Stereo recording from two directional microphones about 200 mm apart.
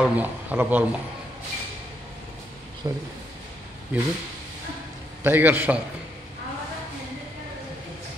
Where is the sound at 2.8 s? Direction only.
15° right (ahead or behind).